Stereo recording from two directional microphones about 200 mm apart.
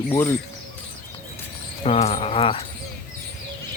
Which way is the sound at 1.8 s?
30° left (ahead or behind).